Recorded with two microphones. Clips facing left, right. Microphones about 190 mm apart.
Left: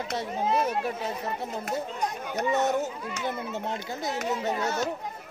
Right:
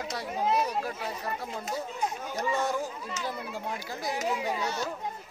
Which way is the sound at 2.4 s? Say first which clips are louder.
Left 4 dB; 20° left (ahead or behind).